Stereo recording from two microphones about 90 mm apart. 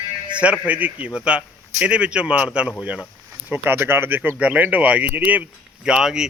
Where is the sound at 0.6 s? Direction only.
15° right (ahead or behind).